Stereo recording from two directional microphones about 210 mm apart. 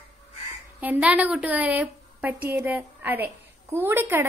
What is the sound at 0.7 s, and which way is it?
A woman's voice, 5° right (ahead or behind).